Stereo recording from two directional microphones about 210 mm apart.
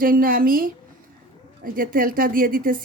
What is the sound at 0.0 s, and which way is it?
A woman's voice, 45° right (ahead or behind).